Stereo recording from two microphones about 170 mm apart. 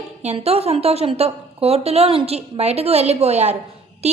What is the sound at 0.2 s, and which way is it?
A woman's voice, 40° right (ahead or behind).